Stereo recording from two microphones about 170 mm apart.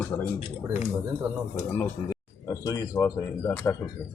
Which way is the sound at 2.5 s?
20° left (ahead or behind).